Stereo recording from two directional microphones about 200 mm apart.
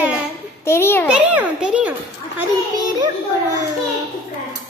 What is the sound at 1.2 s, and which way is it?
Speech, 5° right (ahead or behind).